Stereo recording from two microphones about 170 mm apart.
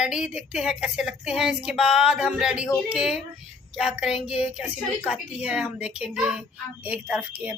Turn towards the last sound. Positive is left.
turn(degrees=-5)  # may be behind; listen again after turning